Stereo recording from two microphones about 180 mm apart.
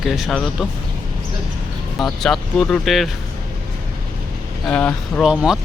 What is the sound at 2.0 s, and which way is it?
Speech, centre (ahead or behind).